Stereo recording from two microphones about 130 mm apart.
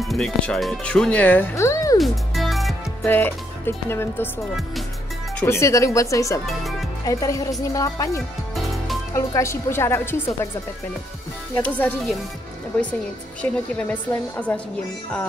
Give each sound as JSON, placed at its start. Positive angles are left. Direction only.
{"t": 0.0, "sound": "speech", "side_deg": 0}
{"t": 2.0, "sound": "music", "side_deg": 0}
{"t": 3.1, "sound": "speech", "side_deg": 15}
{"t": 5.4, "sound": "a woman's voice", "side_deg": 20}
{"t": 11.5, "sound": "speech", "side_deg": 15}
{"t": 13.4, "sound": "speech", "side_deg": 10}